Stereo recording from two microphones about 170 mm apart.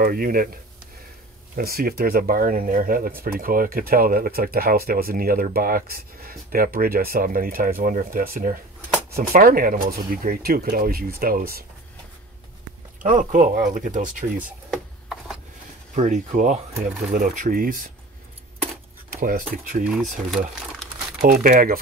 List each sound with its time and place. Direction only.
0.0 s speech: 60° right (ahead or behind)
1.6 s speech: 60° right (ahead or behind)
13.0 s speech: 50° right (ahead or behind)
14.4 s a sound: centre (ahead or behind)
15.9 s speech: 45° right (ahead or behind)
19.1 s speech: 55° right (ahead or behind)
19.8 s speech: centre (ahead or behind)
21.2 s speech: 60° right (ahead or behind)